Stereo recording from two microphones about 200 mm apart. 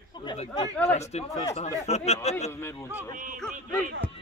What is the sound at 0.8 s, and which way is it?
Speech, 35° left (ahead or behind).